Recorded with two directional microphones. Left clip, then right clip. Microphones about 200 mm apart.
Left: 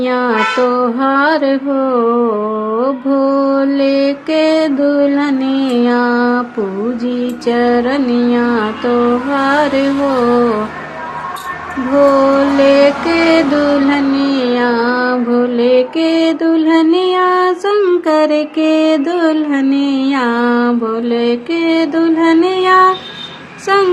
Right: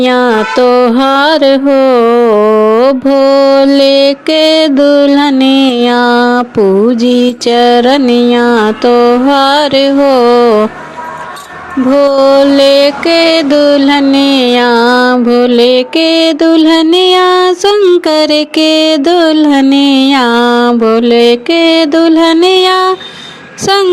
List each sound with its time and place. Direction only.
0.0 s music: 35° right (ahead or behind)
12.1 s mantra: 40° right (ahead or behind)